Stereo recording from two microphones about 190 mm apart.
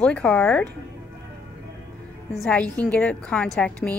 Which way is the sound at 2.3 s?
5° left (ahead or behind).